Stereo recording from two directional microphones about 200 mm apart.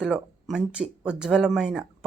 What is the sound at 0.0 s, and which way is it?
Speech, 5° right (ahead or behind).